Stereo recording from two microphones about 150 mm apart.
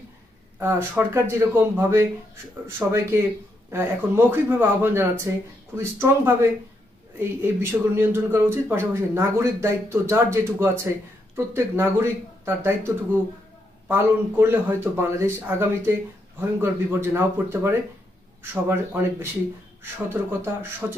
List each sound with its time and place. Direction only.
0.6 s speech: 15° right (ahead or behind)